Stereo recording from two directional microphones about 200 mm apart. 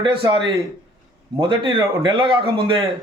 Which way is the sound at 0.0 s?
25° right (ahead or behind).